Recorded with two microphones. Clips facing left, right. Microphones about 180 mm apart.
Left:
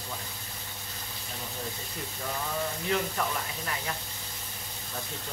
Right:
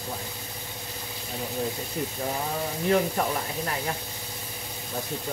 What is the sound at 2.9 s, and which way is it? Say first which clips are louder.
Speech: right 7 dB; 40° right (ahead or behind).